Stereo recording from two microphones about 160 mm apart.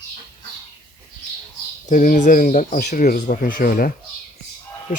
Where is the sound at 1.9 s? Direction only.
55° left (ahead or behind).